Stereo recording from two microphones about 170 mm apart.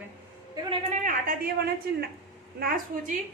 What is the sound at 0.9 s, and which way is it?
A woman's voice, 50° right (ahead or behind).